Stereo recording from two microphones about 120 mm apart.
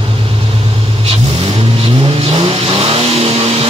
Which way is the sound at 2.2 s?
55° right (ahead or behind).